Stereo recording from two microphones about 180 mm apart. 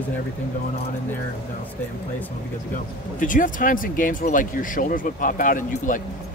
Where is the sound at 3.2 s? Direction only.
50° left (ahead or behind).